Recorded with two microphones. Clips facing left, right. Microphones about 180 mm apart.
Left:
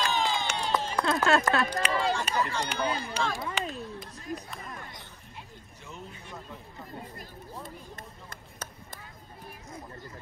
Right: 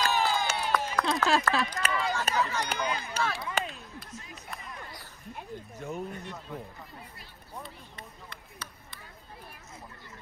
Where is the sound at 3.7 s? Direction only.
40° left (ahead or behind).